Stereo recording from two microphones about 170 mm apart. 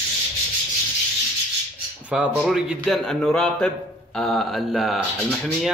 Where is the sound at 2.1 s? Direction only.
5° right (ahead or behind).